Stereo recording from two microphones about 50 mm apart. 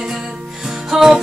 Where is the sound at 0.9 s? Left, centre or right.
Centre.